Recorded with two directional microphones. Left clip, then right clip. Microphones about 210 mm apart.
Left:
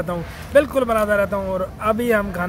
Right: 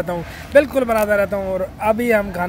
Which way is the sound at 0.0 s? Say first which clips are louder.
Right 2 dB; 10° right (ahead or behind).